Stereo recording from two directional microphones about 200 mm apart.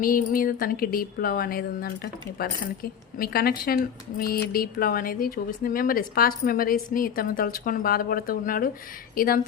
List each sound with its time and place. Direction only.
0.0 s speech: 45° left (ahead or behind)